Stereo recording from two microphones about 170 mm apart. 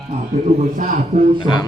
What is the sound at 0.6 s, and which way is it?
Speech, 50° right (ahead or behind).